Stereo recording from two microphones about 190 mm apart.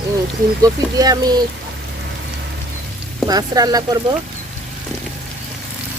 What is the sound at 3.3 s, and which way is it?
Speech, 20° right (ahead or behind).